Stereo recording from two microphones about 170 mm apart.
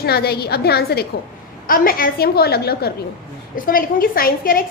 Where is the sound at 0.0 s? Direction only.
70° left (ahead or behind).